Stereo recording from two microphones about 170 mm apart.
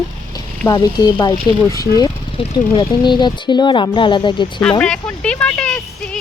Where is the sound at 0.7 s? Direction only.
25° left (ahead or behind).